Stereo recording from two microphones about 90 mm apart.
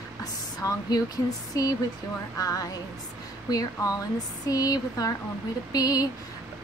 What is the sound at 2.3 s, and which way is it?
Speech, 40° left (ahead or behind).